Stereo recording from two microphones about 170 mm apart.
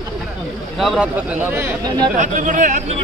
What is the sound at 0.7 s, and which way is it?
Speech, 5° right (ahead or behind).